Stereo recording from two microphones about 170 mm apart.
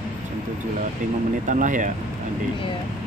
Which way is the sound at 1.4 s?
50° right (ahead or behind).